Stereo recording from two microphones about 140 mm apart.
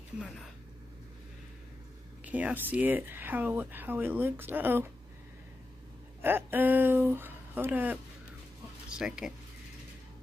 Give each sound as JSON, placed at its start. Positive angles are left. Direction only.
{"t": 2.2, "sound": "speech", "side_deg": -10}
{"t": 6.2, "sound": "speech", "side_deg": -15}